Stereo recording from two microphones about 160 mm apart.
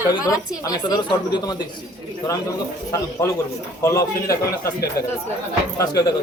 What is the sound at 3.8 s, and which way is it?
Speech, 20° left (ahead or behind).